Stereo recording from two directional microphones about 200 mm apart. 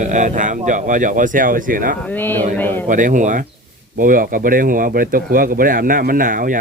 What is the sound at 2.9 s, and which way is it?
Speech, 40° right (ahead or behind).